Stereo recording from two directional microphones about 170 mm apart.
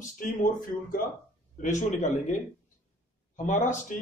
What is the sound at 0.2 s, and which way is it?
Speech, 55° left (ahead or behind).